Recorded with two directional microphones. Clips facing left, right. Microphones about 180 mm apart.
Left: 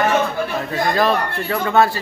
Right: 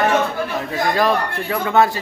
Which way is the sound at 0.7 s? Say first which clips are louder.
Even; 10° right (ahead or behind).